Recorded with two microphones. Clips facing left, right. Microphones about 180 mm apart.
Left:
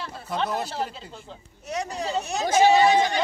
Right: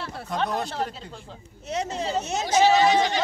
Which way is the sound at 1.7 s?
25° right (ahead or behind).